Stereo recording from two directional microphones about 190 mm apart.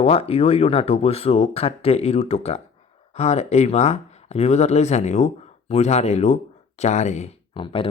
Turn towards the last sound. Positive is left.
turn(degrees=30)  # may be behind; listen again after turning